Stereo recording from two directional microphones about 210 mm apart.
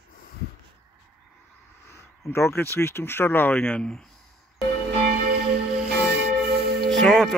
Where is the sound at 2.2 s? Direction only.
10° left (ahead or behind).